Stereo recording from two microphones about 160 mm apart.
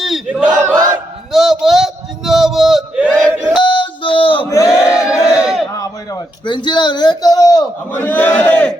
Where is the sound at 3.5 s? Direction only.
30° left (ahead or behind).